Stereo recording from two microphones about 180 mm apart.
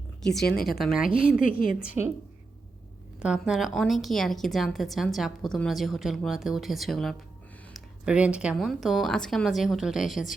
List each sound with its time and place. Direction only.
0.3 s a woman's voice: centre (ahead or behind)
1.4 s a woman's voice: 50° left (ahead or behind)
3.2 s a woman's voice: 5° right (ahead or behind)